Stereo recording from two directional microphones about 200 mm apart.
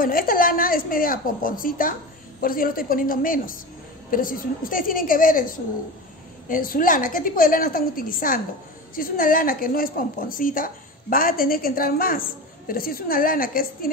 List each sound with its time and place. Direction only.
0.0 s a woman's voice: 45° left (ahead or behind)
6.5 s a woman's voice: 45° left (ahead or behind)